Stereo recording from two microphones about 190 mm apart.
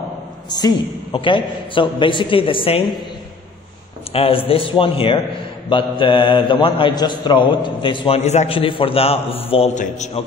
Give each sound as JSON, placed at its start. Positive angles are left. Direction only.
{"t": 0.5, "sound": "a man's voice", "side_deg": 20}
{"t": 4.1, "sound": "a man's voice", "side_deg": 30}